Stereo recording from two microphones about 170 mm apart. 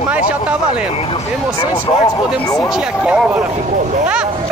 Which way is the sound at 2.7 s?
5° right (ahead or behind).